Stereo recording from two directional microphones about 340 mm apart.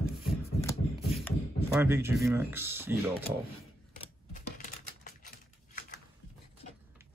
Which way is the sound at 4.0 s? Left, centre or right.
Left.